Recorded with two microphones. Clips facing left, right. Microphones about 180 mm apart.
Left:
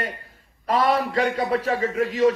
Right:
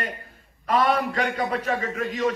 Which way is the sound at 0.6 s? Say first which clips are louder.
Left 1 dB; 35° left (ahead or behind).